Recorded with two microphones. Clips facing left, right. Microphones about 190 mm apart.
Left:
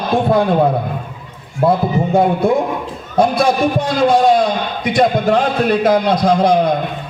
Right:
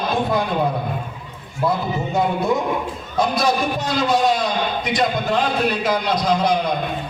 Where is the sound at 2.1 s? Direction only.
30° left (ahead or behind).